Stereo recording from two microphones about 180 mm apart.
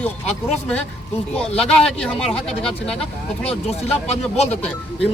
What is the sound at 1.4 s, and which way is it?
Speech, 5° left (ahead or behind).